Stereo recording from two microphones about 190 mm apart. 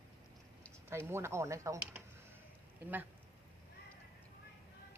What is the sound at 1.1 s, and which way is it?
Speech, 15° right (ahead or behind).